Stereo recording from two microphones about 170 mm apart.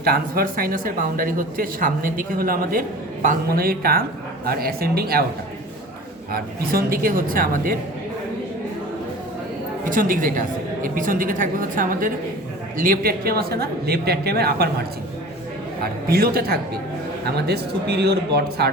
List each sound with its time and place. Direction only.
0.0 s speech: 60° right (ahead or behind)
6.3 s speech: 60° right (ahead or behind)
9.8 s a woman's voice: 50° right (ahead or behind); by 18.7 s 70° right (ahead or behind)